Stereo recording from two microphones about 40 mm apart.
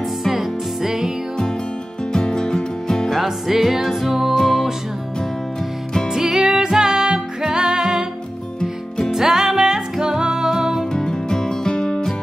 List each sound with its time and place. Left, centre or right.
0.3 s music: centre
2.1 s music: centre
3.1 s music: centre
4.4 s music: centre
6.1 s music: centre
8.5 s music: centre
9.1 s music: centre
10.9 s music: centre